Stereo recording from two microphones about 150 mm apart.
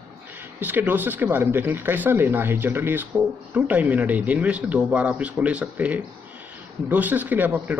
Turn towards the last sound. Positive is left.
turn(degrees=-10)  # may be behind; listen again after turning